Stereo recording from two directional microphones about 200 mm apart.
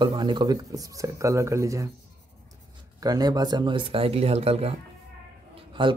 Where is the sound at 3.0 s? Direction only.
20° right (ahead or behind).